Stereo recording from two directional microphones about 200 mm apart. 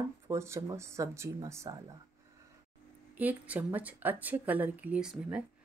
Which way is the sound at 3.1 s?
10° right (ahead or behind).